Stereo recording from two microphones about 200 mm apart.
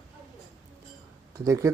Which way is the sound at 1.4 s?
15° right (ahead or behind).